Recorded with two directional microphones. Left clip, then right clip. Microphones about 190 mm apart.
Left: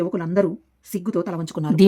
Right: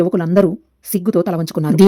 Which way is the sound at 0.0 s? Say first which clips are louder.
Right 7 dB; 25° right (ahead or behind).